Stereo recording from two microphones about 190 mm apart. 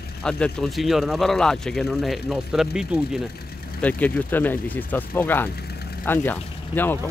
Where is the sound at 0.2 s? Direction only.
5° left (ahead or behind).